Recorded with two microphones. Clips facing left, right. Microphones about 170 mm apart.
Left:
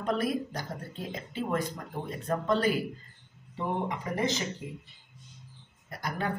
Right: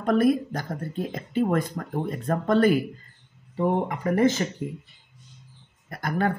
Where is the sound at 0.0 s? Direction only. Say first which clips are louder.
Right 8 dB; 55° right (ahead or behind).